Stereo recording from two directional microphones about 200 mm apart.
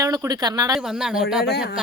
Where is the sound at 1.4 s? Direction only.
55° left (ahead or behind).